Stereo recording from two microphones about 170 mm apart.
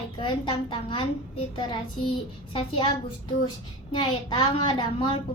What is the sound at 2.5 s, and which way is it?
Speech, 30° left (ahead or behind).